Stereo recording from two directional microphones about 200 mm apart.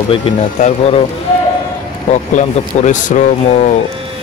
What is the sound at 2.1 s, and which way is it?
Speech, 35° left (ahead or behind).